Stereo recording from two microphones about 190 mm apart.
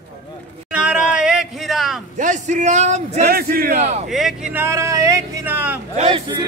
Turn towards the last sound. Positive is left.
turn(degrees=-25)  # may be behind; listen again after turning